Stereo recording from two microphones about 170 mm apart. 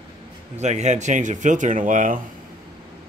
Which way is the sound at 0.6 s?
45° right (ahead or behind).